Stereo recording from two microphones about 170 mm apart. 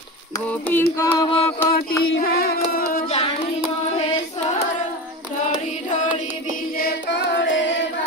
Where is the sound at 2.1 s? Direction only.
65° left (ahead or behind).